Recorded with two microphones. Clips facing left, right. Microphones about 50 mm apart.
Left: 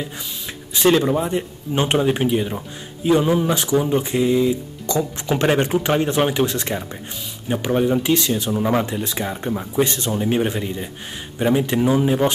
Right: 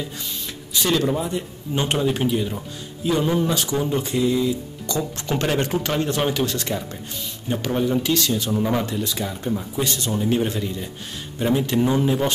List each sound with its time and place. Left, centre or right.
0.7 s speech: left